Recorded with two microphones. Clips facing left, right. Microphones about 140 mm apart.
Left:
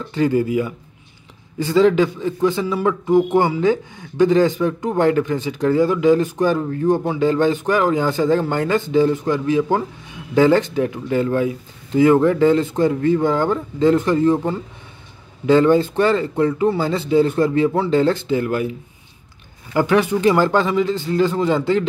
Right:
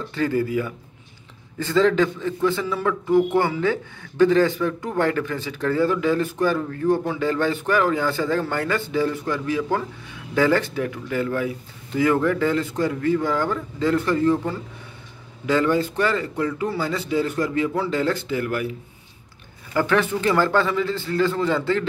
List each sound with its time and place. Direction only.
0.1 s a man's voice: 15° left (ahead or behind)
19.7 s speech: 15° left (ahead or behind)